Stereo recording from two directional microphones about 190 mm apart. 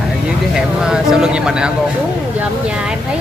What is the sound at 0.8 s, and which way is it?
Speech, 5° right (ahead or behind).